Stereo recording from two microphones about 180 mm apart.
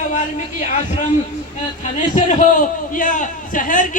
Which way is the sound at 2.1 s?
45° left (ahead or behind).